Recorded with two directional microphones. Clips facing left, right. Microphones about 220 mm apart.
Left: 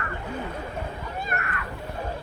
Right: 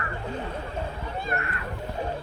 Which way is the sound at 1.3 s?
30° right (ahead or behind).